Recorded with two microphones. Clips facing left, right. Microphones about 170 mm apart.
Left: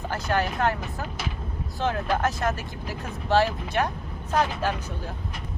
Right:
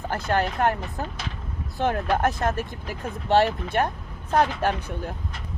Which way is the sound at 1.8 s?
55° right (ahead or behind).